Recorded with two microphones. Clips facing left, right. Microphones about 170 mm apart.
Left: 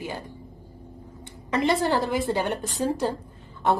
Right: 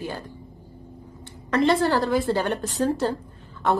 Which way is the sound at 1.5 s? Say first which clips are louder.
Right 3 dB; 15° left (ahead or behind).